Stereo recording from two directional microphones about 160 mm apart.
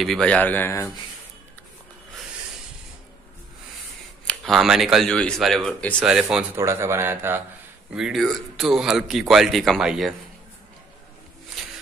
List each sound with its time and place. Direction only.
0.0 s a man's voice: 5° left (ahead or behind)
4.3 s speech: centre (ahead or behind)
5.9 s speech: 5° right (ahead or behind)
6.5 s speech: 15° right (ahead or behind)
7.9 s speech: centre (ahead or behind)